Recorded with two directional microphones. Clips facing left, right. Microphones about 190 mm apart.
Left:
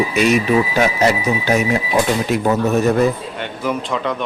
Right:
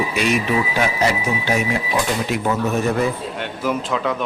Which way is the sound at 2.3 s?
40° left (ahead or behind).